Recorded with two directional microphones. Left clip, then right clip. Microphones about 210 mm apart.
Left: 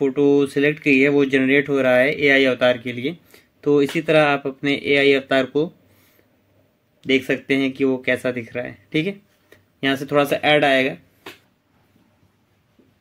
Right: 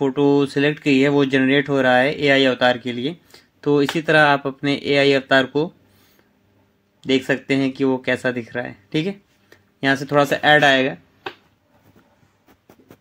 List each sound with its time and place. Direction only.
0.0 s speech: 5° right (ahead or behind)
7.0 s speech: 5° right (ahead or behind)